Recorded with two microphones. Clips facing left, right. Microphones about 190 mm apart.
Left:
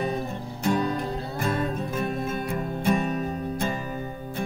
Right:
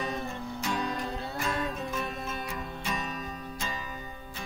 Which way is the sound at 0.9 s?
45° left (ahead or behind).